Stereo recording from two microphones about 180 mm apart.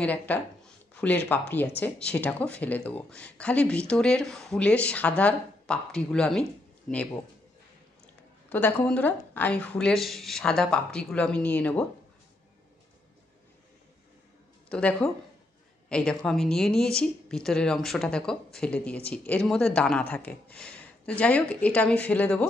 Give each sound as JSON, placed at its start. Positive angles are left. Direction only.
{"t": 0.0, "sound": "speech", "side_deg": 10}
{"t": 8.5, "sound": "speech", "side_deg": 10}
{"t": 14.7, "sound": "speech", "side_deg": 5}